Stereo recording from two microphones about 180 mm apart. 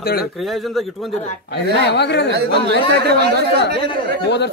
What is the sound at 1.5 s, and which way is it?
Speech, 70° left (ahead or behind).